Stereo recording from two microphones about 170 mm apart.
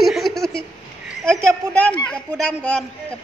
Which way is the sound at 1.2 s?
5° left (ahead or behind).